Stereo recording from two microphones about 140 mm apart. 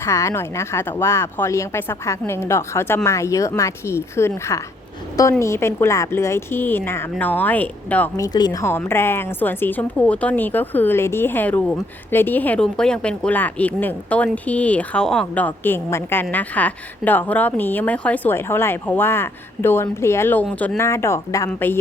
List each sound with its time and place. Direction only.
0.0 s a woman's voice: 20° left (ahead or behind)
8.1 s speech: 25° left (ahead or behind)
8.6 s a woman's voice: 15° left (ahead or behind)